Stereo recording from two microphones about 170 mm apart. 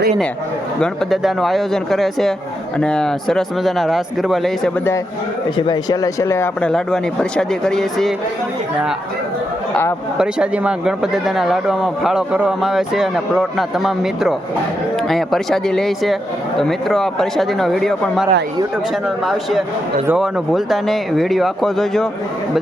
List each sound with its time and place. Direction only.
0.8 s speech: centre (ahead or behind)
5.5 s speech: 25° left (ahead or behind)
6.7 s speech: 5° left (ahead or behind)
10.2 s speech: 5° right (ahead or behind)